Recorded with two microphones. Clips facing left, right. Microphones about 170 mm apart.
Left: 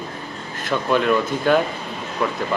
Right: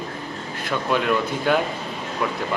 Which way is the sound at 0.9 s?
10° right (ahead or behind).